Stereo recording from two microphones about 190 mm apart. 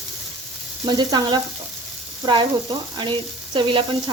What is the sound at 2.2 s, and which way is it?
Speech, 25° right (ahead or behind).